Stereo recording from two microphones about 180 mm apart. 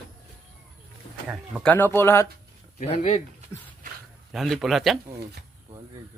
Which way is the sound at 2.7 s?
35° left (ahead or behind).